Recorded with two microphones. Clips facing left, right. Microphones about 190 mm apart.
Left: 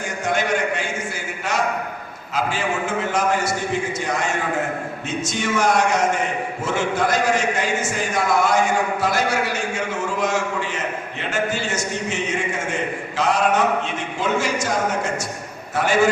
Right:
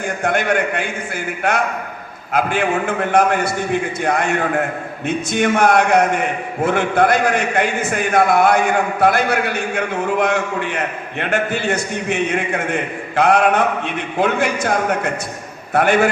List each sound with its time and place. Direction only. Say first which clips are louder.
0.0 s a man's voice: right 3 dB; 55° right (ahead or behind)